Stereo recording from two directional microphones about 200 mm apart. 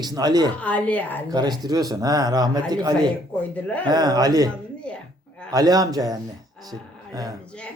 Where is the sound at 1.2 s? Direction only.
20° right (ahead or behind).